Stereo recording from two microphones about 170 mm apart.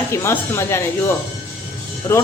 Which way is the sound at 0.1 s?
15° left (ahead or behind).